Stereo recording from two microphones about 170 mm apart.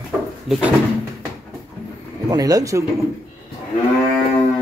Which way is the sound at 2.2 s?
20° right (ahead or behind).